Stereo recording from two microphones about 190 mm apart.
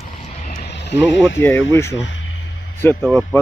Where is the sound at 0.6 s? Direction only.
60° left (ahead or behind).